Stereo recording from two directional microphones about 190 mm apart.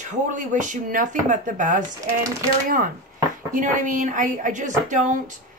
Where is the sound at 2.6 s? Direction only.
45° right (ahead or behind).